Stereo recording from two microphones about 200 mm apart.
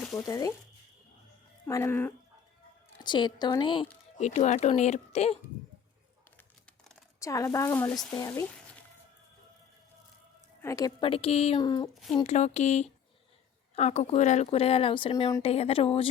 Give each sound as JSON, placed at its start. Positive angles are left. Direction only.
{"t": 0.0, "sound": "a sound", "side_deg": 5}
{"t": 0.3, "sound": "a woman's voice", "side_deg": 15}
{"t": 1.6, "sound": "a woman's voice", "side_deg": 10}
{"t": 3.0, "sound": "speech", "side_deg": 20}
{"t": 4.2, "sound": "speech", "side_deg": 35}
{"t": 7.2, "sound": "a woman's voice", "side_deg": 15}
{"t": 10.6, "sound": "speech", "side_deg": 15}
{"t": 12.1, "sound": "speech", "side_deg": 35}